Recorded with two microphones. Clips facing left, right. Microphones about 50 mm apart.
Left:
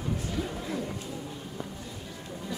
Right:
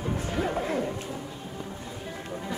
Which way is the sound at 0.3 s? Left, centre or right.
Right.